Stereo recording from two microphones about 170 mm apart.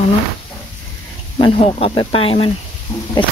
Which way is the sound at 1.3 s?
30° left (ahead or behind).